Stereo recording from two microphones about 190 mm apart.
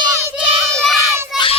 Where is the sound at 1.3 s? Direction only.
25° left (ahead or behind).